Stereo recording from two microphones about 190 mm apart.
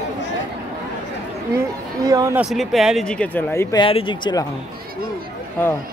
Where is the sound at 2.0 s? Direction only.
15° right (ahead or behind).